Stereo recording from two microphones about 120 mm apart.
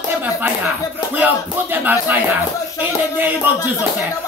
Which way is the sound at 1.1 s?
15° right (ahead or behind).